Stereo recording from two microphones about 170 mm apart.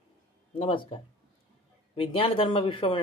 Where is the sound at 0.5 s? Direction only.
35° left (ahead or behind).